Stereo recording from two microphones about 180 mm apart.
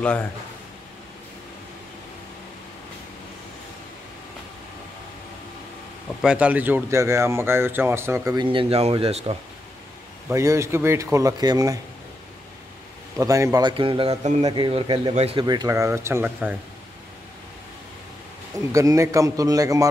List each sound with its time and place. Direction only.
0.0 s speech: 5° left (ahead or behind)
6.2 s speech: 5° right (ahead or behind); by 9.4 s 30° right (ahead or behind)
10.3 s speech: 15° right (ahead or behind)
13.2 s a man's voice: 20° right (ahead or behind)
18.7 s a man's voice: 15° right (ahead or behind)